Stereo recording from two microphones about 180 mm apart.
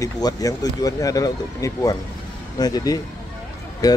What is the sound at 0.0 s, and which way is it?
Speech, 20° left (ahead or behind).